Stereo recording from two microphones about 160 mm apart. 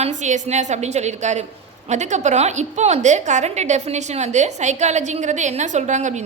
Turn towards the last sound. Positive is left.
turn(degrees=-50)  # may be behind; listen again after turning